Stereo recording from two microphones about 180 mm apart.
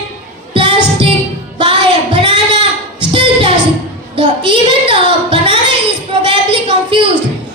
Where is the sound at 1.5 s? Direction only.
30° right (ahead or behind).